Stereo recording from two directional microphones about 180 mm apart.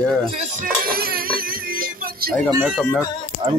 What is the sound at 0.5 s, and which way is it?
Music, 55° right (ahead or behind).